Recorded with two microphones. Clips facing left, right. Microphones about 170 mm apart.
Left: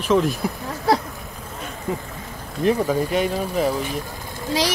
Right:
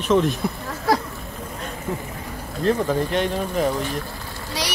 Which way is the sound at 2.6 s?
10° left (ahead or behind).